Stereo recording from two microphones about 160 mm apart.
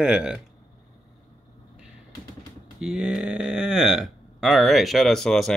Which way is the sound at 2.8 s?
5° right (ahead or behind).